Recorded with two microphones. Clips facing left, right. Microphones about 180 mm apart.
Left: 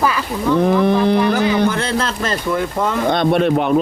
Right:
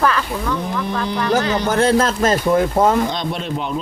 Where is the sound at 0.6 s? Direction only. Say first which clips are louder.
Left 9 dB; 65° left (ahead or behind).